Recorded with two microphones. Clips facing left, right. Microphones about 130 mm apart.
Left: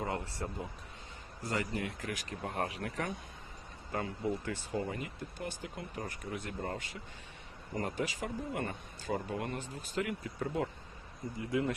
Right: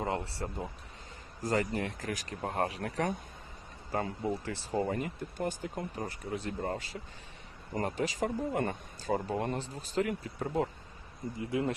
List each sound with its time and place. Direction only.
0.0 s speech: 30° right (ahead or behind)
6.0 s speech: 30° right (ahead or behind)